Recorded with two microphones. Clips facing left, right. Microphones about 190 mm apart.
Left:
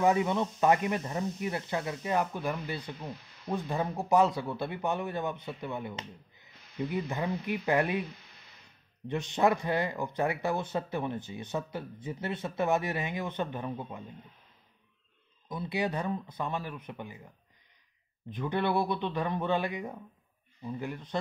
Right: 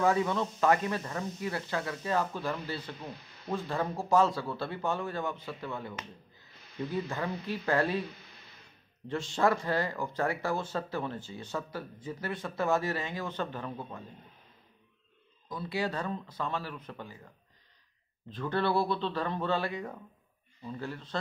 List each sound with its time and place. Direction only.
0.0 s speech: 20° left (ahead or behind)
9.1 s speech: 20° left (ahead or behind)
15.4 s speech: 20° left (ahead or behind)
18.3 s speech: 15° left (ahead or behind)